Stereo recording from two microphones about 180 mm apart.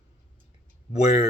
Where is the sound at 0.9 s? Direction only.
35° left (ahead or behind).